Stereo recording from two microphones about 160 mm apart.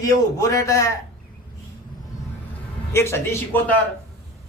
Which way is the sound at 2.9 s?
15° left (ahead or behind).